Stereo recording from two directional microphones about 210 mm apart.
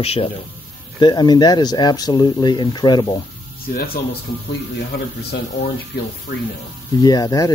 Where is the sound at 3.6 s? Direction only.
45° left (ahead or behind).